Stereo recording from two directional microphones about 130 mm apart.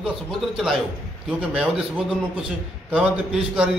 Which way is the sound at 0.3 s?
Centre (ahead or behind).